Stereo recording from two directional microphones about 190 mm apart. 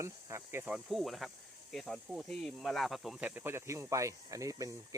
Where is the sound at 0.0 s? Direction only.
15° right (ahead or behind).